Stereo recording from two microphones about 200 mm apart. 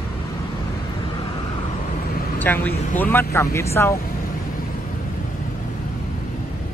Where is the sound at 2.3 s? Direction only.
10° left (ahead or behind).